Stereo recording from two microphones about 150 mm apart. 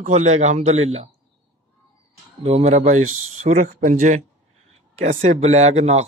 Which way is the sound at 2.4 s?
40° right (ahead or behind).